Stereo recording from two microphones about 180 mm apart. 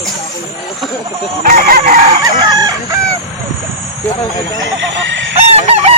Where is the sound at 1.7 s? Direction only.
45° right (ahead or behind).